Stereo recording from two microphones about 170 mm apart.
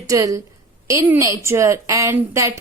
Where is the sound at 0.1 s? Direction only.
20° right (ahead or behind).